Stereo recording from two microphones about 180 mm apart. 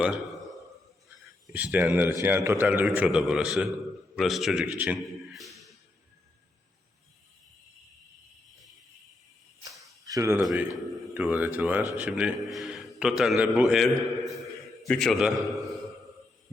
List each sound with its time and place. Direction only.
0.0 s a man's voice: 5° right (ahead or behind)
1.5 s a man's voice: 10° right (ahead or behind)
10.1 s a man's voice: 15° right (ahead or behind); by 15.5 s centre (ahead or behind)